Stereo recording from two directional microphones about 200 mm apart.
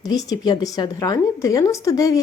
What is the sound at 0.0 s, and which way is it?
Speech, 20° left (ahead or behind).